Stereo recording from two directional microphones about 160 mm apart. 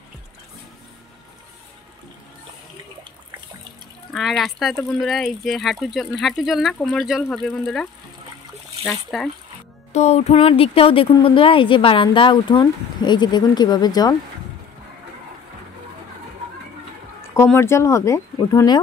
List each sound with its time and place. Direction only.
4.1 s speech: centre (ahead or behind)
9.9 s music: 45° left (ahead or behind)
10.3 s a woman's voice: 35° left (ahead or behind)
17.6 s speech: 15° left (ahead or behind)